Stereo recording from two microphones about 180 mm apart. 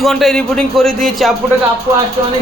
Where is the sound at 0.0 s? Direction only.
Centre (ahead or behind).